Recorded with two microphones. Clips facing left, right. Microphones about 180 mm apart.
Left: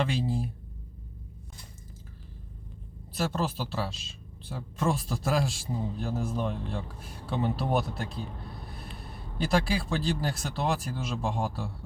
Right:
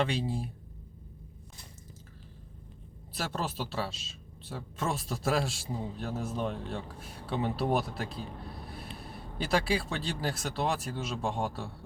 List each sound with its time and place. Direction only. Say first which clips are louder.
0.0 s speech: left 2 dB; centre (ahead or behind)
3.2 s speech: left 4 dB; centre (ahead or behind)
9.5 s speech: left 2 dB; centre (ahead or behind)